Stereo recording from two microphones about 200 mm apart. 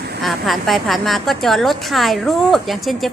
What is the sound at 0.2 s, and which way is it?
Speech, centre (ahead or behind).